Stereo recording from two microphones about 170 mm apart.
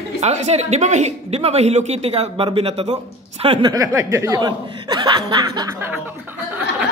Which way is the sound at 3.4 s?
25° right (ahead or behind).